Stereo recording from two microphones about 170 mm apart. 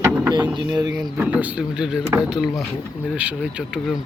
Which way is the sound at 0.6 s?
25° right (ahead or behind).